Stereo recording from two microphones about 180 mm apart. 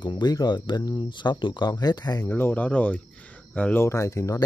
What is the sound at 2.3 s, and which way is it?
Speech, 10° left (ahead or behind).